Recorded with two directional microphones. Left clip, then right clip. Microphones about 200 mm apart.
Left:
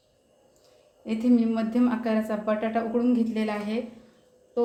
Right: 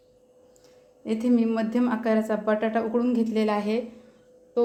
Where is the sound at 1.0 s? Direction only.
35° right (ahead or behind).